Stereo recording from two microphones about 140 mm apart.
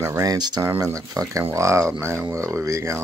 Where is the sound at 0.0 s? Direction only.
20° right (ahead or behind).